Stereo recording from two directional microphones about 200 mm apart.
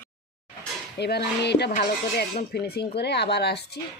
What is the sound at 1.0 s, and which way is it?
Speech, 55° left (ahead or behind).